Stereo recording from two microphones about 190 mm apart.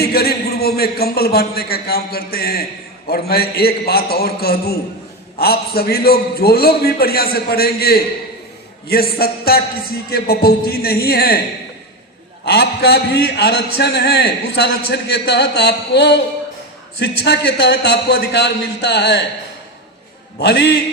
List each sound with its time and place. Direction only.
0.0 s a man's voice: 55° left (ahead or behind)
12.5 s a man's voice: 60° left (ahead or behind)
20.4 s a man's voice: 65° left (ahead or behind)